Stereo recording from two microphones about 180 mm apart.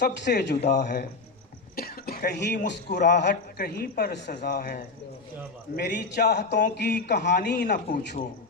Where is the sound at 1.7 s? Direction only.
55° left (ahead or behind).